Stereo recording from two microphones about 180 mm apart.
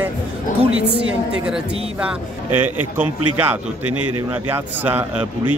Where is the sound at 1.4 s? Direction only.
5° right (ahead or behind).